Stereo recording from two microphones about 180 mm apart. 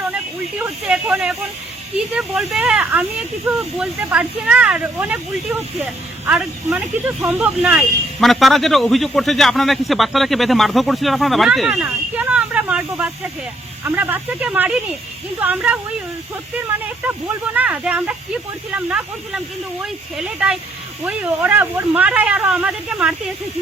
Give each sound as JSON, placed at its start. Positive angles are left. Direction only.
{"t": 0.6, "sound": "speech", "side_deg": -10}